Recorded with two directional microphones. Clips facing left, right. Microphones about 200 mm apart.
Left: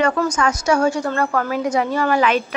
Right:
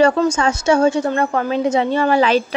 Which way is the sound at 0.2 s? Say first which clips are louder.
Right 3 dB; 25° right (ahead or behind).